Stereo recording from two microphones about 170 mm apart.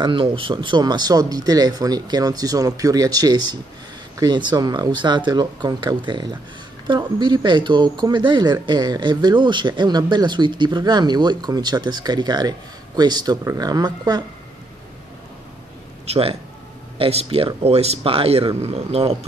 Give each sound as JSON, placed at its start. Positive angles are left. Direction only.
{"t": 0.0, "sound": "speech", "side_deg": -30}
{"t": 16.1, "sound": "speech", "side_deg": -35}